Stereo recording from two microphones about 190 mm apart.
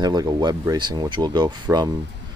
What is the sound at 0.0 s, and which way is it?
Speech, 20° right (ahead or behind).